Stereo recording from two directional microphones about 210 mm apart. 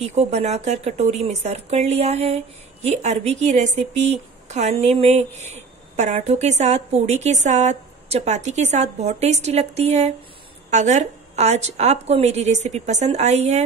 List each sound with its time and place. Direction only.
0.0 s speech: 30° right (ahead or behind)